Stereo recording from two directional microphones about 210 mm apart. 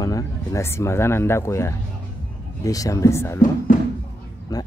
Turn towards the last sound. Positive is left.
turn(degrees=15)  # may be behind; listen again after turning